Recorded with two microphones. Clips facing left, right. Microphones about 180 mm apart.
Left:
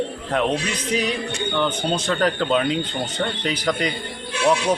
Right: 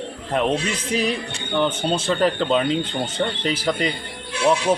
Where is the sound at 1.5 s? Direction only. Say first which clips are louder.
Right 3 dB; centre (ahead or behind).